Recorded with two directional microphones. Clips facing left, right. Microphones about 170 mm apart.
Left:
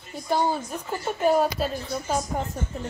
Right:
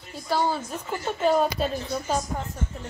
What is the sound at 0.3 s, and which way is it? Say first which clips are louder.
Speech: left 1 dB; 15° left (ahead or behind).